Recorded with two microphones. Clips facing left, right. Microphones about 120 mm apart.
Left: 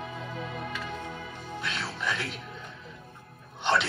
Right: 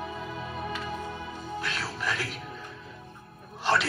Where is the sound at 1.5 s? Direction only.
Centre (ahead or behind).